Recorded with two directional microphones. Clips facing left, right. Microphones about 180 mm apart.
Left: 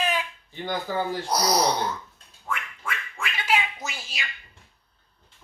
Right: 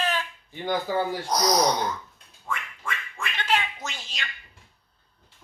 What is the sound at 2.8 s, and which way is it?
Squawk, 5° left (ahead or behind).